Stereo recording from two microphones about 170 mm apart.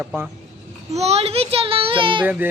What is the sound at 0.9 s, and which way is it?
A child's voice, 40° right (ahead or behind).